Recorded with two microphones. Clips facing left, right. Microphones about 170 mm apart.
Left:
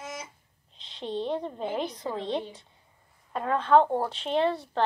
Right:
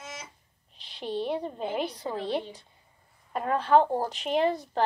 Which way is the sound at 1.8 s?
30° right (ahead or behind).